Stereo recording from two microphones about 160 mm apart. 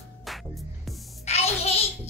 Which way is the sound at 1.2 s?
40° left (ahead or behind).